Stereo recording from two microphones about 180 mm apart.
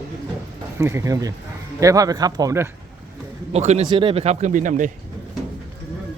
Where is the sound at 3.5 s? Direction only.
35° right (ahead or behind).